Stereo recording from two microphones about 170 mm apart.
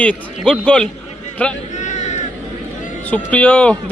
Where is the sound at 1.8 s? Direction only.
45° left (ahead or behind).